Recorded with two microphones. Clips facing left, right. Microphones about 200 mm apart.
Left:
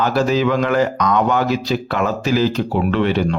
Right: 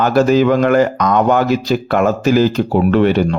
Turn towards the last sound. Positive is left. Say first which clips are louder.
# right 5 dB
turn(degrees=-45)  # may be behind; listen again after turning